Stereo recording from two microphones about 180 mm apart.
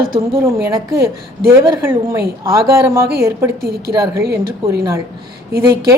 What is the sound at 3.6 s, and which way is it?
Speech, 60° right (ahead or behind).